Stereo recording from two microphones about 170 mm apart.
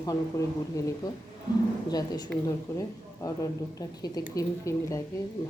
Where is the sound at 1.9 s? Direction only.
25° left (ahead or behind).